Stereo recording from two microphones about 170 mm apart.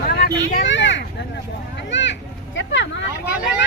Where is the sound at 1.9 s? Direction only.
90° left.